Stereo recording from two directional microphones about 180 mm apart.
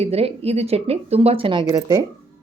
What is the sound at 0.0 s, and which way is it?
A woman's voice, 35° right (ahead or behind).